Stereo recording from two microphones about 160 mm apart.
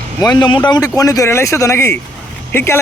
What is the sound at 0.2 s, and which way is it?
A man's voice, 25° left (ahead or behind).